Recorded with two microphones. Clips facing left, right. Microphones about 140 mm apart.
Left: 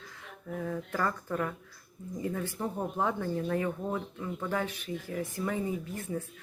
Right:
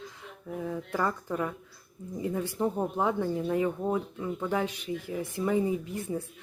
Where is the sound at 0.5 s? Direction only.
15° right (ahead or behind).